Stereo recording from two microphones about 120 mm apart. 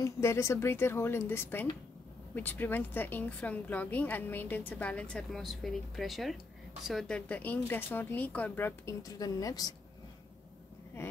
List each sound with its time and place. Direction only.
0.0 s a woman's voice: 25° left (ahead or behind)
9.0 s speech: 30° left (ahead or behind)